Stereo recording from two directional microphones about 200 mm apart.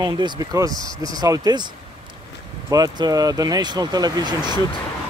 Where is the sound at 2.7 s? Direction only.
20° right (ahead or behind).